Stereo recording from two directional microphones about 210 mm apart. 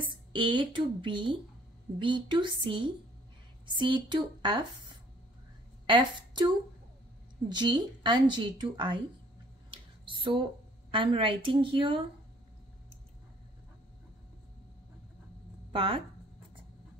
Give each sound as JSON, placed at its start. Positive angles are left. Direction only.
{"t": 0.3, "sound": "a woman's voice", "side_deg": -25}
{"t": 7.4, "sound": "a woman's voice", "side_deg": -20}
{"t": 9.7, "sound": "a sound", "side_deg": -25}
{"t": 10.9, "sound": "a woman's voice", "side_deg": -25}
{"t": 15.7, "sound": "speech", "side_deg": -25}